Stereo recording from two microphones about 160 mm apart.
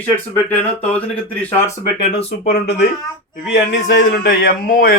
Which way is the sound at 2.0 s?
40° left (ahead or behind).